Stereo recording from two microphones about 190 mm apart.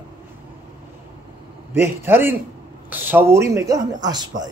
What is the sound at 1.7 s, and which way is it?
A man's voice, 10° right (ahead or behind).